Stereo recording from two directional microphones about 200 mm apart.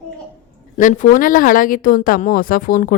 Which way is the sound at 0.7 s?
40° left (ahead or behind).